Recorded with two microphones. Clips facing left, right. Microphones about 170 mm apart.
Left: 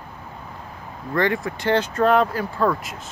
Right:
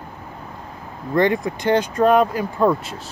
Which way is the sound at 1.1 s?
20° right (ahead or behind).